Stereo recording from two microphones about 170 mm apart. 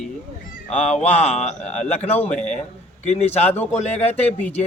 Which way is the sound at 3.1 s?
40° left (ahead or behind).